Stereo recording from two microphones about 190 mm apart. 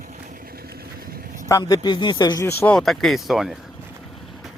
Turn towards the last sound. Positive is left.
turn(degrees=0)  # may be behind; listen again after turning